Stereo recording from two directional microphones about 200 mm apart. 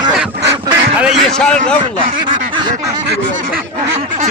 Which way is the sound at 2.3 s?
25° right (ahead or behind).